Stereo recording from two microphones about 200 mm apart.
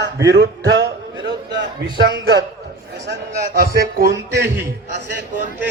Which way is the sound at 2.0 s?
55° right (ahead or behind).